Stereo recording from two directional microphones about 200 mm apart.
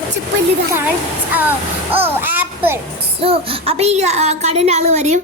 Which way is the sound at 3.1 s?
30° right (ahead or behind).